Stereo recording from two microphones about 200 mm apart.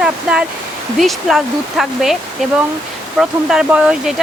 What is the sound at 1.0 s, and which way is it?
Speech, centre (ahead or behind).